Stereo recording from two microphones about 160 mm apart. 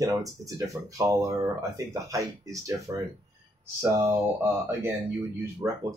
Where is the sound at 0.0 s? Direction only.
20° right (ahead or behind).